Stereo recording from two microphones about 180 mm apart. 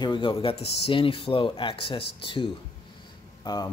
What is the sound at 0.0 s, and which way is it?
Speech, 25° left (ahead or behind).